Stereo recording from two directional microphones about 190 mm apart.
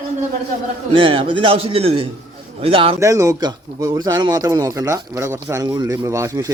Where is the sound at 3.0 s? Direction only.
15° right (ahead or behind).